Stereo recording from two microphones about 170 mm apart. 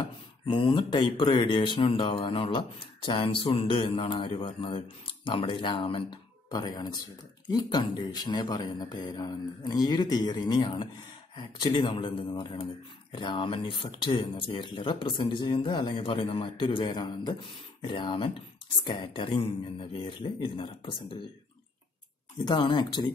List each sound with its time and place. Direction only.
0.0 s speech: 30° left (ahead or behind)
22.4 s speech: 25° left (ahead or behind)